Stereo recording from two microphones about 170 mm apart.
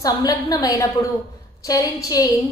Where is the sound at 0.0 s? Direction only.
20° left (ahead or behind).